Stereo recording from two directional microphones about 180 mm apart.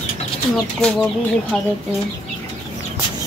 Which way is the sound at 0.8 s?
5° left (ahead or behind).